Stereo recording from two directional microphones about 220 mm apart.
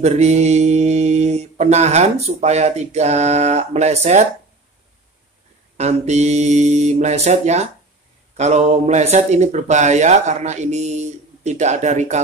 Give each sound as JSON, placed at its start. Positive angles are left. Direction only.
{"t": 0.0, "sound": "speech", "side_deg": -30}
{"t": 5.8, "sound": "speech", "side_deg": -30}